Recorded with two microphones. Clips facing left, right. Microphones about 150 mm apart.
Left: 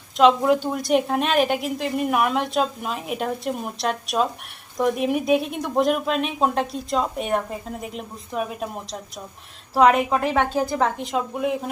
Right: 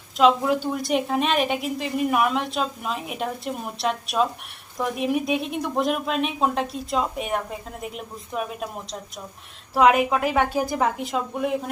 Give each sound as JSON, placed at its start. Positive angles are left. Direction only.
{"t": 0.2, "sound": "speech", "side_deg": 0}